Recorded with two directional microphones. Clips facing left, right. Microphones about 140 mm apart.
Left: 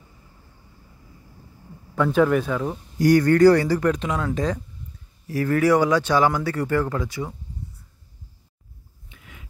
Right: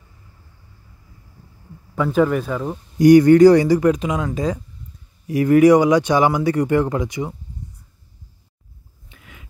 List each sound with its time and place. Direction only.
2.0 s speech: centre (ahead or behind)
3.0 s speech: 15° right (ahead or behind)
9.1 s a sound: 35° right (ahead or behind)